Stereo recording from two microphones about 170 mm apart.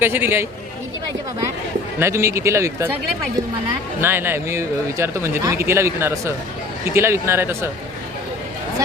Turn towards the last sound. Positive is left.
turn(degrees=-15)  # may be behind; listen again after turning